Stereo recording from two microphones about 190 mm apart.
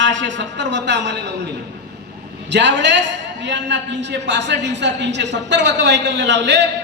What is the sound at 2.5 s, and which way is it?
A man's voice, 70° right (ahead or behind).